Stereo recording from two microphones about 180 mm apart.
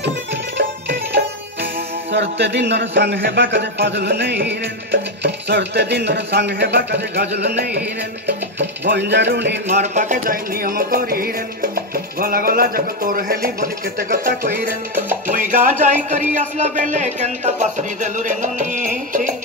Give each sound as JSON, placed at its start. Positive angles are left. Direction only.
{"t": 0.0, "sound": "music", "side_deg": -80}
{"t": 8.5, "sound": "speech", "side_deg": -75}
{"t": 9.7, "sound": "music", "side_deg": -40}